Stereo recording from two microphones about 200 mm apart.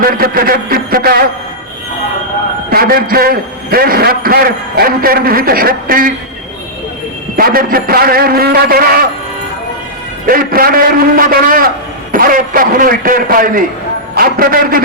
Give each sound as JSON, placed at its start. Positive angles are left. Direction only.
{"t": 0.0, "sound": "a man's voice", "side_deg": -45}
{"t": 2.6, "sound": "a man's voice", "side_deg": -50}
{"t": 7.3, "sound": "a man's voice", "side_deg": -45}
{"t": 10.2, "sound": "a man's voice", "side_deg": -45}